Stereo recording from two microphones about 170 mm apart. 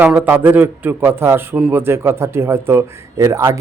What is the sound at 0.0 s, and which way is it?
A man's voice, 10° right (ahead or behind).